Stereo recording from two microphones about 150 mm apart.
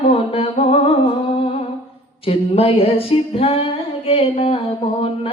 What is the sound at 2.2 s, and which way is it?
Music, 40° left (ahead or behind).